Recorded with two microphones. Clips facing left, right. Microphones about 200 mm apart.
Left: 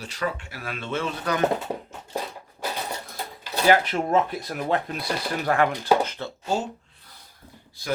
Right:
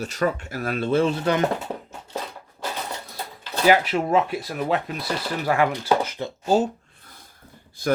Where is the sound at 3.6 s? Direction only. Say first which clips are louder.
Right 1 dB; 10° right (ahead or behind).